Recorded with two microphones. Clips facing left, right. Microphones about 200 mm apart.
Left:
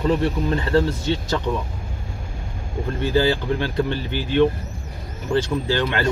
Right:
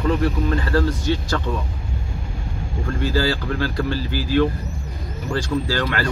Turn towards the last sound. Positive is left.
turn(degrees=20)  # may be behind; listen again after turning